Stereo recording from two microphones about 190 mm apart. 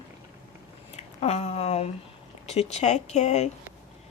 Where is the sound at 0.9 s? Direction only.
35° left (ahead or behind).